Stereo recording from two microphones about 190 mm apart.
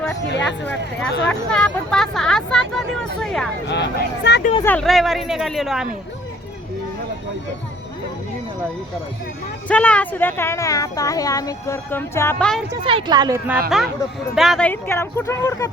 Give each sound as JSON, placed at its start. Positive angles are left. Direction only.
{"t": 1.3, "sound": "speech", "side_deg": 5}
{"t": 3.7, "sound": "speech", "side_deg": 65}
{"t": 4.6, "sound": "speech", "side_deg": 5}
{"t": 9.6, "sound": "speech", "side_deg": 5}
{"t": 12.8, "sound": "speech", "side_deg": -25}
{"t": 13.5, "sound": "speech", "side_deg": 0}
{"t": 14.7, "sound": "speech", "side_deg": 15}